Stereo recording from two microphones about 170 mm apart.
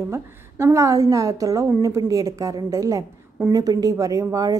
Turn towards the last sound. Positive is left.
turn(degrees=-20)  # may be behind; listen again after turning